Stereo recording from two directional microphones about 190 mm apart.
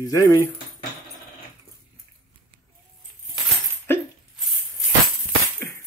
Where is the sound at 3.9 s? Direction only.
10° left (ahead or behind).